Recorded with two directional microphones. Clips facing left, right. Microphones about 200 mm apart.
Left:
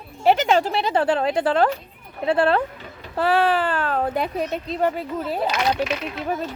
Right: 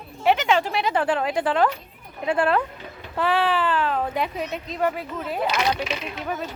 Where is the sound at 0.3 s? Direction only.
40° left (ahead or behind).